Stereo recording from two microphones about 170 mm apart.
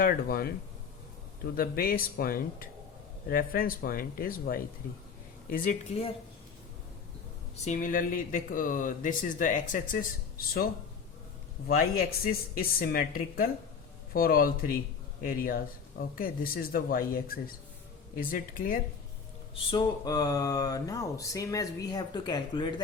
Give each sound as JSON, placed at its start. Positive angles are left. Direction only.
{"t": 0.0, "sound": "speech", "side_deg": 60}
{"t": 1.5, "sound": "speech", "side_deg": 60}
{"t": 5.9, "sound": "speech", "side_deg": 35}
{"t": 7.6, "sound": "speech", "side_deg": 50}
{"t": 11.7, "sound": "speech", "side_deg": 60}
{"t": 19.7, "sound": "speech", "side_deg": 20}